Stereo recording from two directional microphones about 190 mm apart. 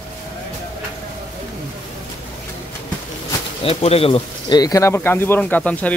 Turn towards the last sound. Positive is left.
turn(degrees=10)  # may be behind; listen again after turning